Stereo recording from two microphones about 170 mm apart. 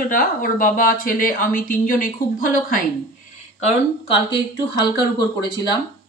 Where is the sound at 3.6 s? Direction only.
30° left (ahead or behind).